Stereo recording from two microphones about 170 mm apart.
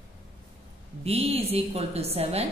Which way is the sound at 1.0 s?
35° right (ahead or behind).